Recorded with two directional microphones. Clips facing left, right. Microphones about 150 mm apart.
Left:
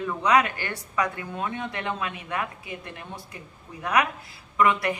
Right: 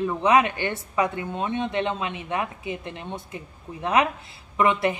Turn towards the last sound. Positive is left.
turn(degrees=-25)  # may be behind; listen again after turning